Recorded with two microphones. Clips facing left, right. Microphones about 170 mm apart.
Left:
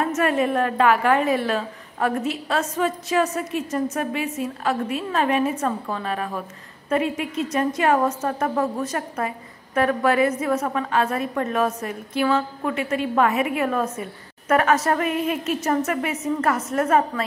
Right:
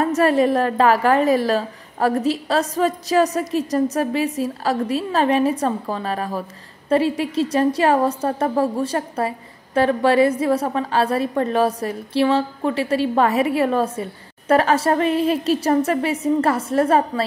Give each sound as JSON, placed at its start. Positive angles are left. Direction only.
{"t": 0.0, "sound": "a woman's voice", "side_deg": -35}